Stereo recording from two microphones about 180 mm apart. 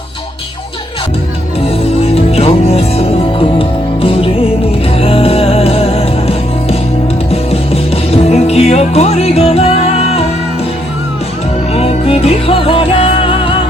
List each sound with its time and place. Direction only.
2.0 s music: 35° left (ahead or behind)
11.7 s music: 35° left (ahead or behind)